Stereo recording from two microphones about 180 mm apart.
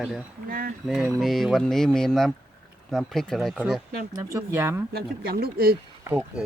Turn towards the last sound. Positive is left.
turn(degrees=-5)  # may be behind; listen again after turning